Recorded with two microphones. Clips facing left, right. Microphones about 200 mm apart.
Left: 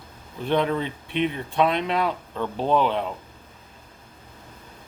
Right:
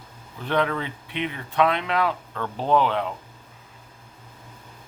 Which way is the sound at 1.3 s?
15° left (ahead or behind).